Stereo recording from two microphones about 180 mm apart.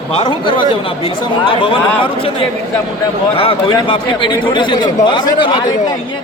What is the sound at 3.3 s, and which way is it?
Speech, 30° left (ahead or behind).